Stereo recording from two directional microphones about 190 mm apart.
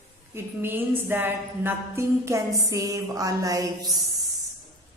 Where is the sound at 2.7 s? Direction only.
15° right (ahead or behind).